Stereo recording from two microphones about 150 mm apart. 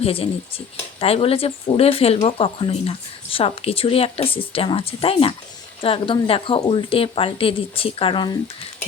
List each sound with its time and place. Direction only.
0.0 s speech: 40° left (ahead or behind)